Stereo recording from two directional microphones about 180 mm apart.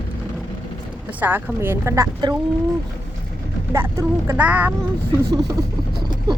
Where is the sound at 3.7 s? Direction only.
15° right (ahead or behind).